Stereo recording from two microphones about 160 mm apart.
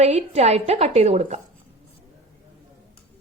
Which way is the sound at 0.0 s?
45° right (ahead or behind).